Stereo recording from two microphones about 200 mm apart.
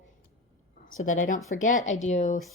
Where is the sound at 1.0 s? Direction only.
40° left (ahead or behind).